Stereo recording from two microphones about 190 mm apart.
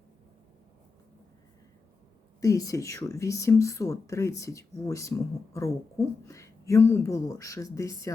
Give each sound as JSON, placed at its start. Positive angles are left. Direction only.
{"t": 2.4, "sound": "speech", "side_deg": 15}